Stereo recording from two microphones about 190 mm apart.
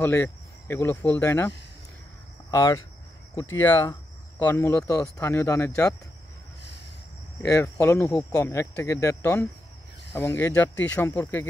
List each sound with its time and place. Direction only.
0.0 s speech: 10° left (ahead or behind)
2.5 s speech: 15° left (ahead or behind)
7.4 s speech: 15° left (ahead or behind)
8.4 s speech: 15° left (ahead or behind)